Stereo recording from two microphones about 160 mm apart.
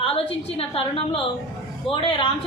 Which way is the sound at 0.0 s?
35° left (ahead or behind).